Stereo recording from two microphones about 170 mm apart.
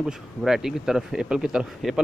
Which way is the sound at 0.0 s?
5° right (ahead or behind).